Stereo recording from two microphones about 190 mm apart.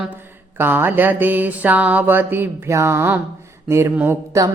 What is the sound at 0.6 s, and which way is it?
Music, 10° right (ahead or behind).